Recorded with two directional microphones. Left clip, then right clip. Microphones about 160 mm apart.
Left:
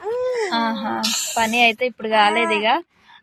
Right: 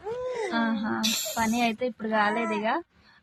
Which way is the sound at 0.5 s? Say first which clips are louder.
Left 7 dB; 15° left (ahead or behind).